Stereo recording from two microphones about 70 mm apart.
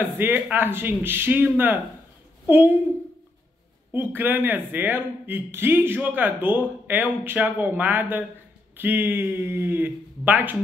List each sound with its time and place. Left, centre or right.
0.0 s a woman's voice: right
3.9 s speech: right